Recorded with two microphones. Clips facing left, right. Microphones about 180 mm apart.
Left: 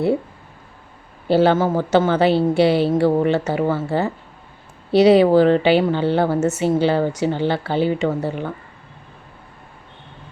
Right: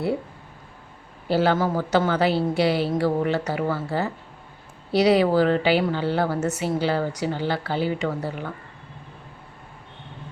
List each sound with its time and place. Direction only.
1.3 s a woman's voice: 25° left (ahead or behind)